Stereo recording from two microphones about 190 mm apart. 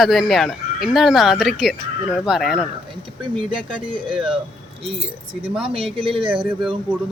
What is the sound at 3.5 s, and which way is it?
Speech, 25° right (ahead or behind).